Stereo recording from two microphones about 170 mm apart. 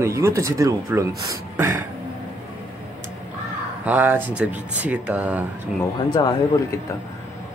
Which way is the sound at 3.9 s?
10° right (ahead or behind).